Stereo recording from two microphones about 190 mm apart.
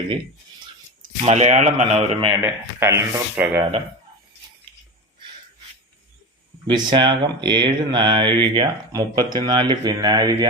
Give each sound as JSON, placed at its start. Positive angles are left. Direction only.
{"t": 1.2, "sound": "speech", "side_deg": -35}
{"t": 2.4, "sound": "speech", "side_deg": -15}
{"t": 6.7, "sound": "speech", "side_deg": -25}